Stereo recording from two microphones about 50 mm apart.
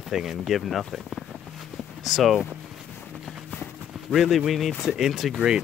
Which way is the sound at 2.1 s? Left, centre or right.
Centre.